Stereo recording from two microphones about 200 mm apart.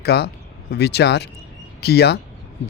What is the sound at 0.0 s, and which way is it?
Speech, 55° left (ahead or behind).